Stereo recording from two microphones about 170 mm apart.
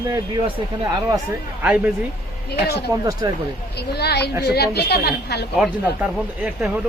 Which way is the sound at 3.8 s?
75° left (ahead or behind).